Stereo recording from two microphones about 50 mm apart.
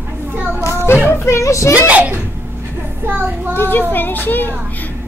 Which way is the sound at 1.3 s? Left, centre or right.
Left.